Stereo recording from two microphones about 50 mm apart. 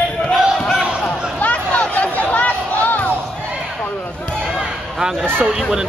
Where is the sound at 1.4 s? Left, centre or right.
Left.